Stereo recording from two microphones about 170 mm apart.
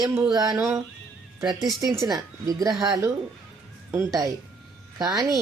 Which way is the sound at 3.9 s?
20° right (ahead or behind).